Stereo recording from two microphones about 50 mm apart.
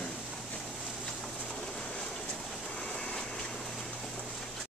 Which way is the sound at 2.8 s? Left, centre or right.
Centre.